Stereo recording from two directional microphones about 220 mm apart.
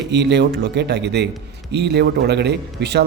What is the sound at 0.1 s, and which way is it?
A man's voice, 50° right (ahead or behind).